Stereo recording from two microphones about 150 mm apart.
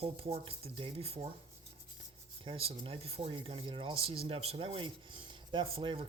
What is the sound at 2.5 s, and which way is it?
Speech, 35° right (ahead or behind).